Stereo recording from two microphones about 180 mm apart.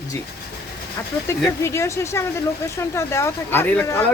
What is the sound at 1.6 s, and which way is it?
Speech, 15° left (ahead or behind).